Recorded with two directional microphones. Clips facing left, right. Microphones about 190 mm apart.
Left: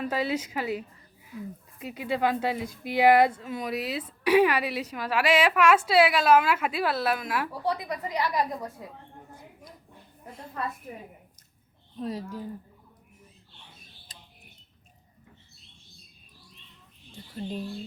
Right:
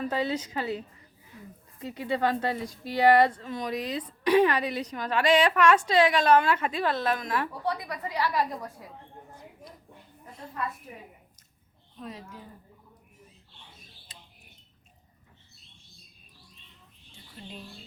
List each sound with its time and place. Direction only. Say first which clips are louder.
0.0 s speech: left 1 dB; 10° left (ahead or behind)
7.6 s speech: left 2 dB; 20° left (ahead or behind)
11.9 s a woman's voice: left 8 dB; 35° left (ahead or behind)